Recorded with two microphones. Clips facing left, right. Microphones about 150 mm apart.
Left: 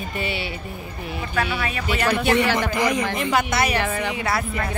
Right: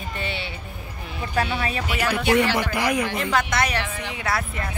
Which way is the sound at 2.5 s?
10° right (ahead or behind).